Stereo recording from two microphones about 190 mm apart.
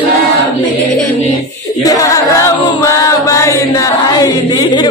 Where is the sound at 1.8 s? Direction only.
15° left (ahead or behind).